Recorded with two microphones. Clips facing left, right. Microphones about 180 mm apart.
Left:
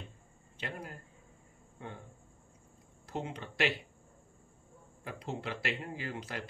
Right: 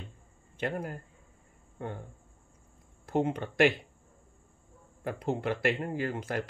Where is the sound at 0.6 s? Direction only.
50° right (ahead or behind).